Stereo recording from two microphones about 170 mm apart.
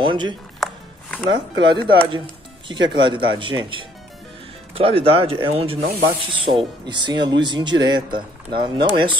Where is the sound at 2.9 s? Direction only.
30° right (ahead or behind).